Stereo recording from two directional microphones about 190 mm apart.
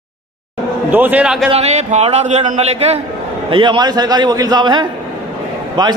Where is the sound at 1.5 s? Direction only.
35° right (ahead or behind).